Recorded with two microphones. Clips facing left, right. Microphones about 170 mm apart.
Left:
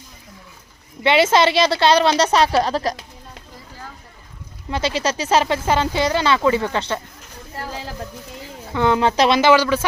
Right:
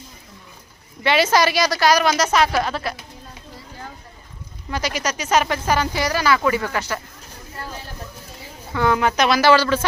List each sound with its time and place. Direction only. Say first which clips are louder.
1.0 s speech: left 2 dB; 25° left (ahead or behind)
4.7 s speech: left 3 dB; 25° left (ahead or behind)
7.7 s a sound: left 4 dB; 90° left
8.7 s speech: left 2 dB; 20° left (ahead or behind)